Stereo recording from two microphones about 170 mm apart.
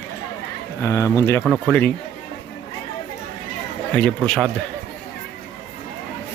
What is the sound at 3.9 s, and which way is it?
Speech, 5° left (ahead or behind).